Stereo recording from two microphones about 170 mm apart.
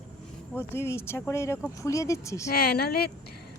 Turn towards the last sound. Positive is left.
turn(degrees=65)  # may be behind; listen again after turning